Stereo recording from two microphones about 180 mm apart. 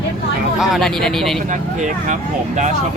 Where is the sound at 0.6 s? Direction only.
Centre (ahead or behind).